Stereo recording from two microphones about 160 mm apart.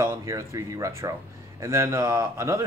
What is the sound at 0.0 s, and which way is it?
Speech, 20° right (ahead or behind).